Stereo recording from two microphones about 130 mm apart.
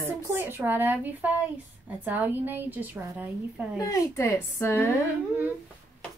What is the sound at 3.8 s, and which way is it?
A woman's voice, 25° left (ahead or behind).